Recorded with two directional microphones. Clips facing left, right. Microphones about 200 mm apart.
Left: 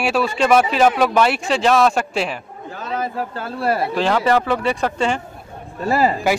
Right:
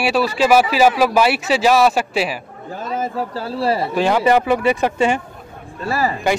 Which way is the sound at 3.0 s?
30° right (ahead or behind).